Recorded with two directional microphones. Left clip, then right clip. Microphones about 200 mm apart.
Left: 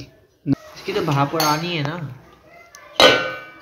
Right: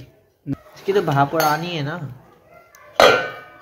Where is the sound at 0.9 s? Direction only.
45° right (ahead or behind).